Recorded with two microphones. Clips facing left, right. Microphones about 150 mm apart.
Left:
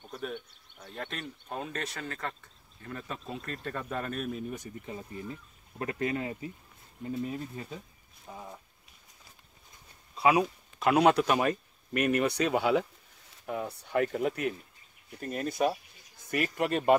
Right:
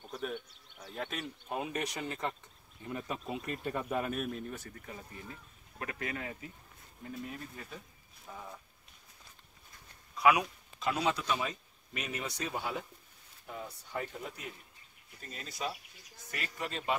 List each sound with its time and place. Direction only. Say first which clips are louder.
0.0 s speech: left 1 dB; 5° right (ahead or behind)
4.6 s speech: left 6 dB; 20° left (ahead or behind)
8.3 s a sound: left 2 dB; 20° left (ahead or behind)
10.1 s a sound: left 2 dB; 30° left (ahead or behind)
10.8 s speech: left 10 dB; 65° left (ahead or behind); by 12.8 s 85° left
13.5 s speech: left 9 dB; 60° left (ahead or behind)
15.1 s speech: left 13 dB; 55° left (ahead or behind)